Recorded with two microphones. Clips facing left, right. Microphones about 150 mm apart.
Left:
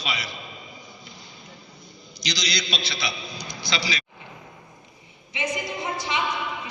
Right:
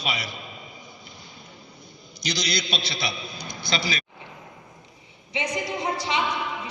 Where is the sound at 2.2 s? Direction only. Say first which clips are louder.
Right 2 dB; 55° right (ahead or behind).